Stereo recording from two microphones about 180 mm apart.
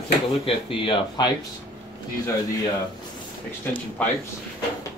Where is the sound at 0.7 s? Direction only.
25° left (ahead or behind).